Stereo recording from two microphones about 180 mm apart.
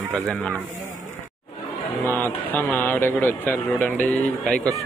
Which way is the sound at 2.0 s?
10° left (ahead or behind).